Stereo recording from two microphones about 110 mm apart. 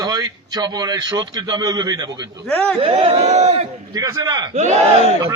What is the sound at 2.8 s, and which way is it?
Speech, 60° right (ahead or behind).